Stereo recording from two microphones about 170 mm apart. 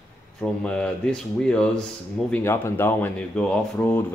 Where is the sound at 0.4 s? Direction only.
5° left (ahead or behind).